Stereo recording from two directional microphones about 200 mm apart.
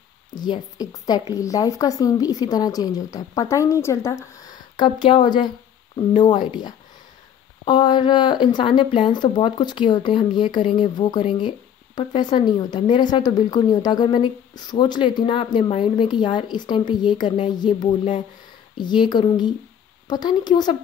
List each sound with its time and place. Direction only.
0.3 s speech: 20° left (ahead or behind)
7.6 s speech: 20° left (ahead or behind)